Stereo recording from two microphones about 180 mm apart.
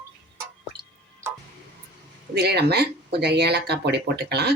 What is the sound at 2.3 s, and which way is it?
Speech, 65° right (ahead or behind).